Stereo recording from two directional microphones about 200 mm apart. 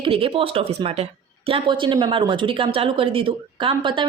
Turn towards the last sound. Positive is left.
turn(degrees=-25)  # may be behind; listen again after turning